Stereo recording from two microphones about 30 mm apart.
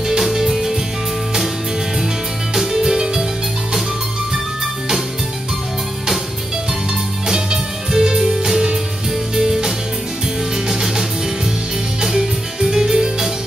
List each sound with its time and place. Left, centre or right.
0.3 s music: centre
2.5 s music: centre
7.2 s music: right